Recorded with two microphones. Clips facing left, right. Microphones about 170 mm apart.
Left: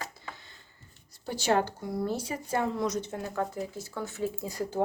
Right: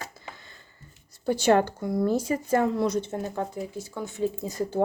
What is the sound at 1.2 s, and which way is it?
Speech, 55° right (ahead or behind).